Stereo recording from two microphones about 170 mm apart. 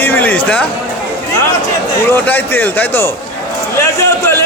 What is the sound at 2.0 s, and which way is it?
A man's voice, 10° left (ahead or behind).